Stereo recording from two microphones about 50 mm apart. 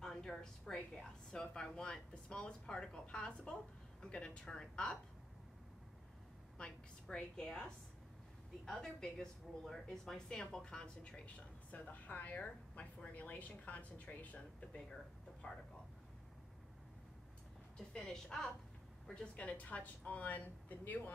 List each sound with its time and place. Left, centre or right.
0.0 s a sound: centre
0.9 s speech: centre
6.6 s a woman's voice: centre
11.3 s a woman's voice: left
17.7 s a woman's voice: centre
19.3 s a woman's voice: left